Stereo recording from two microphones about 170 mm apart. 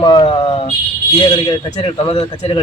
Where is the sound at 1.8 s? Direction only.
30° left (ahead or behind).